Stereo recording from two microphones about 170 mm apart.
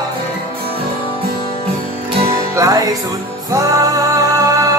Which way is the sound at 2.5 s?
20° right (ahead or behind).